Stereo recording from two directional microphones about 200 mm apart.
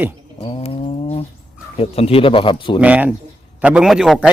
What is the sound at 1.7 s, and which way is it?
Speech, 30° left (ahead or behind).